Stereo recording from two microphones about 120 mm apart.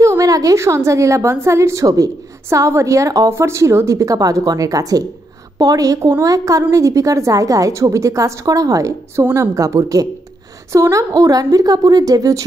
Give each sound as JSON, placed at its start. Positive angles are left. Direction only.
{"t": 0.0, "sound": "a woman's voice", "side_deg": -25}